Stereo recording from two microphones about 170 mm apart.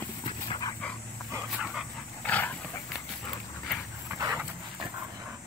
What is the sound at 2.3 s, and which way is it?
Dog, 10° left (ahead or behind).